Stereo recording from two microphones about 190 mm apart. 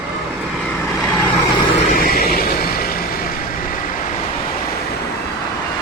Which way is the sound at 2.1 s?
50° left (ahead or behind).